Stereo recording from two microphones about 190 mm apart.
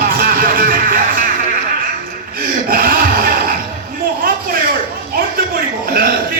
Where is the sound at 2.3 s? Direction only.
50° right (ahead or behind).